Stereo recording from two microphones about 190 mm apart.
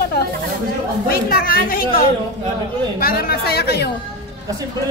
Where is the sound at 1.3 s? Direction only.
50° left (ahead or behind).